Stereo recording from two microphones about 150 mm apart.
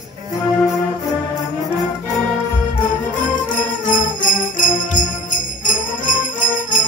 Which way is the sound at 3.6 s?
60° left (ahead or behind).